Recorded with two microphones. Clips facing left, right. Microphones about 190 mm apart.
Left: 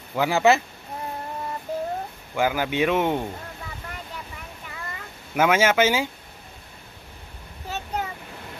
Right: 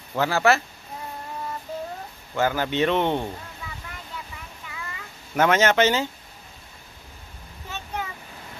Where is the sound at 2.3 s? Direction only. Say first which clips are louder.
Even; 10° left (ahead or behind).